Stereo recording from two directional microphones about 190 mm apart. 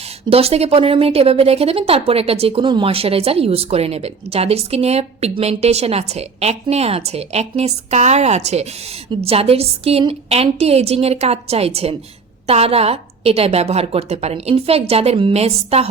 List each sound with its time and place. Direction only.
0.3 s speech: 30° right (ahead or behind)